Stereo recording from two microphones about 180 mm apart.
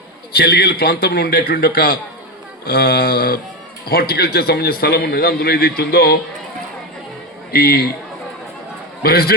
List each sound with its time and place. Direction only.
0.3 s a man's voice: 60° left (ahead or behind)
7.5 s a man's voice: 60° left (ahead or behind)
9.0 s a man's voice: 60° left (ahead or behind)